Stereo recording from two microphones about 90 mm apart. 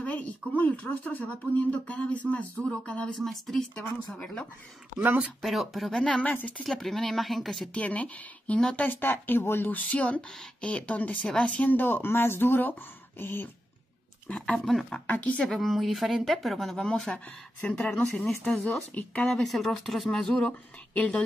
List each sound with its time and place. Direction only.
0.0 s a woman's voice: 15° left (ahead or behind)
4.1 s speech: 10° left (ahead or behind)
5.4 s speech: centre (ahead or behind); by 6.5 s 15° left (ahead or behind)
6.6 s a woman's voice: 5° left (ahead or behind)
7.7 s speech: 15° left (ahead or behind)
8.8 s speech: 20° left (ahead or behind)
14.2 s speech: 10° left (ahead or behind)
15.0 s a woman's voice: 15° left (ahead or behind)